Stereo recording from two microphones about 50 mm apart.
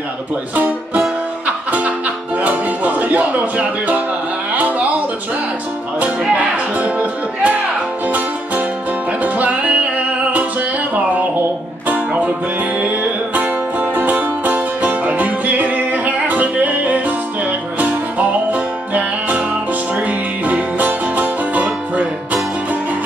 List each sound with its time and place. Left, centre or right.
1.7 s music: right
6.3 s music: right
9.2 s music: right
12.8 s music: right